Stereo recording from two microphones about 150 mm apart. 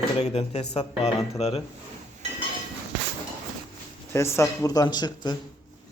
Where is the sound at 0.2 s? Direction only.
45° left (ahead or behind).